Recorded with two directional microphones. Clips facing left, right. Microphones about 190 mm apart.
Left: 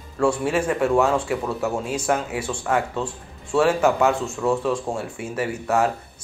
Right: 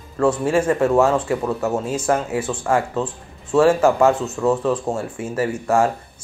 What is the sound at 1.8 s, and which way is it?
Speech, 10° left (ahead or behind).